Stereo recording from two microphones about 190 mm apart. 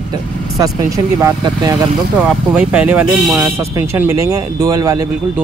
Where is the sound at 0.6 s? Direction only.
20° right (ahead or behind).